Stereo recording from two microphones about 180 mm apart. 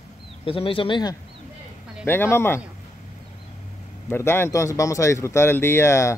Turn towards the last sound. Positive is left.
turn(degrees=15)  # may be behind; listen again after turning